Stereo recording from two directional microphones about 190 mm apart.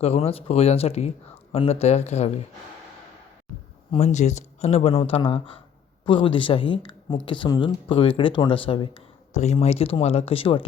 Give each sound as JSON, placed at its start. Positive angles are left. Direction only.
{"t": 0.0, "sound": "speech", "side_deg": 30}
{"t": 3.9, "sound": "speech", "side_deg": 35}